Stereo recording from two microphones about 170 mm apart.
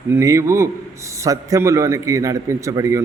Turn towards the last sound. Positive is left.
turn(degrees=-20)  # may be behind; listen again after turning